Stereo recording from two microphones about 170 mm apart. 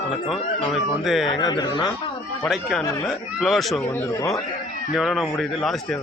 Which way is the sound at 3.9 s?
15° left (ahead or behind).